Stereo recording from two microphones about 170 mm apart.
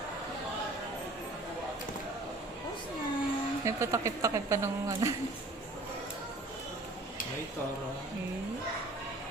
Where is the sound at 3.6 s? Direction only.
15° right (ahead or behind).